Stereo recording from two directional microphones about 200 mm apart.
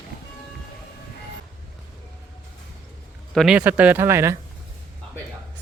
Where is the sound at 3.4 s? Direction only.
5° right (ahead or behind).